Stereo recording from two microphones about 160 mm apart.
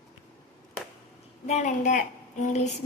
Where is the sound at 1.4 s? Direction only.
50° left (ahead or behind).